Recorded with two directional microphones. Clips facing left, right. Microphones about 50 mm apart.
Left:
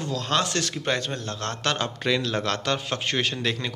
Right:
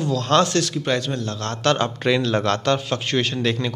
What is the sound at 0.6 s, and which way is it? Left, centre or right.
Speech, left.